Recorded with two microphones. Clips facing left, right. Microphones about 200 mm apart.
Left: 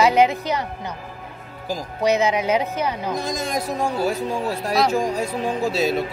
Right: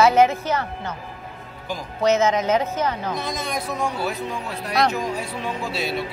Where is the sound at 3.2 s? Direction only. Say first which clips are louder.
Left 3 dB; 45° left (ahead or behind).